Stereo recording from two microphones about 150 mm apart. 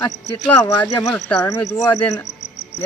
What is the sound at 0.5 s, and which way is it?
Speech, 10° left (ahead or behind).